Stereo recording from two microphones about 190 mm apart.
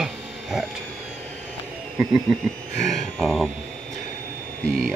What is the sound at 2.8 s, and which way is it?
Speech, centre (ahead or behind).